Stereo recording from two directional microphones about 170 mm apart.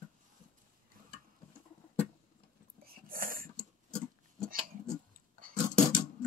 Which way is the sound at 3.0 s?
55° right (ahead or behind).